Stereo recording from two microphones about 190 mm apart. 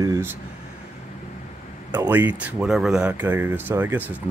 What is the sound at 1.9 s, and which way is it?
Speech, 10° right (ahead or behind).